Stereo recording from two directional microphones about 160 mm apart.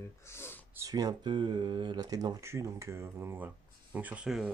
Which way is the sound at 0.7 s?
20° right (ahead or behind).